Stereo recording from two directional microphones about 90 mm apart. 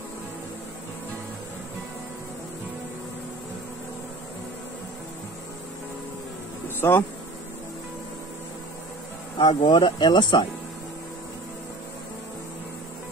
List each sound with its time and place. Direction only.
6.8 s speech: 25° left (ahead or behind)
9.4 s speech: 55° left (ahead or behind)